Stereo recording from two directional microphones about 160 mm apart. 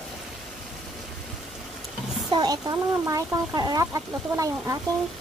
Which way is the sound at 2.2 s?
25° right (ahead or behind).